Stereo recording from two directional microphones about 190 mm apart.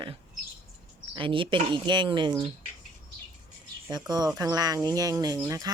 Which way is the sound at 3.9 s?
20° right (ahead or behind).